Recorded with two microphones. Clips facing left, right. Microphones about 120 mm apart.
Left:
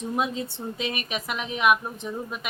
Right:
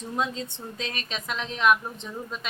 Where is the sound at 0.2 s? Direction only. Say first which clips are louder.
Even; 15° left (ahead or behind).